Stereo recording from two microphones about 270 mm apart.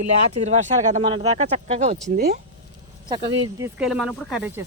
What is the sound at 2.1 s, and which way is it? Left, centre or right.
Speech, right.